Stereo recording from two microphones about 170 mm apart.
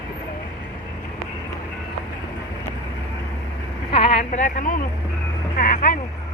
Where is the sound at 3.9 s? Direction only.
35° left (ahead or behind); by 4.8 s 50° left (ahead or behind).